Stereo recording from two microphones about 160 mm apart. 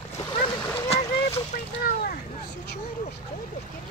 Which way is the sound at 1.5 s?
65° left (ahead or behind).